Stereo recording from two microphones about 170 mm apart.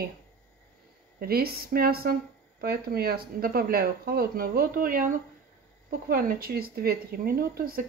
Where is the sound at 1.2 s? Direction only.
65° right (ahead or behind).